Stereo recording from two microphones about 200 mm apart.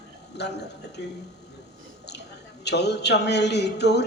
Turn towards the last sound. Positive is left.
turn(degrees=55)  # may be behind; listen again after turning